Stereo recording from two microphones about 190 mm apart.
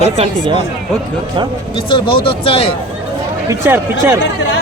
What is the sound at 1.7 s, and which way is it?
Speech, 25° left (ahead or behind).